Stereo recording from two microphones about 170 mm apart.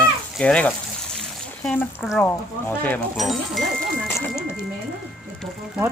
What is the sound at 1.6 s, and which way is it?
Speech, 10° left (ahead or behind).